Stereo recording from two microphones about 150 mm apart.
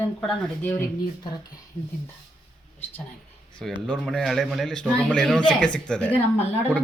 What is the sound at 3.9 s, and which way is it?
A man's voice, 5° left (ahead or behind).